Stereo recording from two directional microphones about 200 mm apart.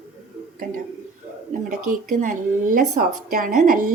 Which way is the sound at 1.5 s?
40° right (ahead or behind).